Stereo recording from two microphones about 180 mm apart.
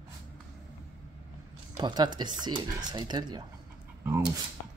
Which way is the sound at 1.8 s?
25° right (ahead or behind).